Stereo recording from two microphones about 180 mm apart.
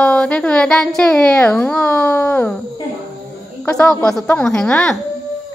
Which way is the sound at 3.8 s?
5° left (ahead or behind).